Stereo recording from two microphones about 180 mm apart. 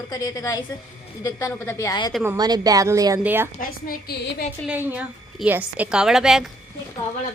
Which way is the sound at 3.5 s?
55° left (ahead or behind).